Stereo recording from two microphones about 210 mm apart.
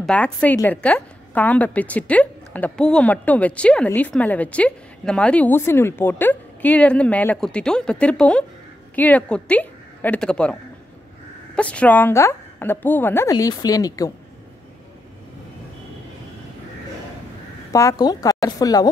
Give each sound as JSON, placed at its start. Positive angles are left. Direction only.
{"t": 0.0, "sound": "a woman's voice", "side_deg": 5}
{"t": 17.7, "sound": "a woman's voice", "side_deg": 15}